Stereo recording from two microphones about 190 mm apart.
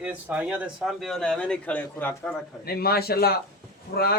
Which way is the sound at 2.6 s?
55° left (ahead or behind).